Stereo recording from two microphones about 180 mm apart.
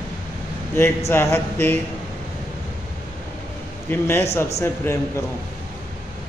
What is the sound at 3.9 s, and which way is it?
A man's voice, 15° left (ahead or behind).